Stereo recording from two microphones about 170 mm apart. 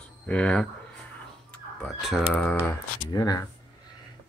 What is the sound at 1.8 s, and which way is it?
Speech, centre (ahead or behind).